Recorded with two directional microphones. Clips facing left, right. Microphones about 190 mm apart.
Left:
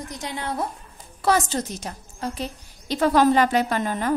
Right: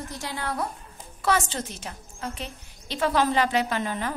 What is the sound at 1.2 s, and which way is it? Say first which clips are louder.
A woman's voice: left 4 dB; 40° left (ahead or behind).